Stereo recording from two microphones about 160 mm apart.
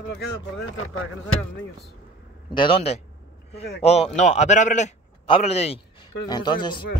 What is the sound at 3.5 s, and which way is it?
Speech, 90° left.